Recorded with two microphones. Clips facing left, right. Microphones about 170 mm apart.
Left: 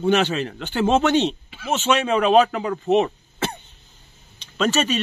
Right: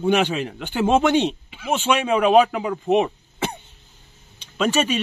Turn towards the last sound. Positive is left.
turn(degrees=-10)  # may be behind; listen again after turning